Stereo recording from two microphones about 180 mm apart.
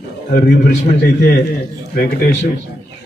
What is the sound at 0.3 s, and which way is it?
A man's voice, 55° left (ahead or behind).